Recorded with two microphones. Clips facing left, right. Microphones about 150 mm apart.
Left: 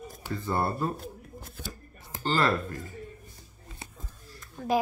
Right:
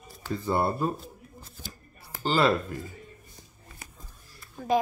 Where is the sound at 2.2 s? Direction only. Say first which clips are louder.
Right 3 dB; 15° right (ahead or behind).